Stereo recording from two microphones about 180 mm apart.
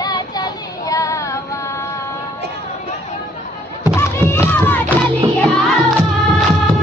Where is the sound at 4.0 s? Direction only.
15° left (ahead or behind).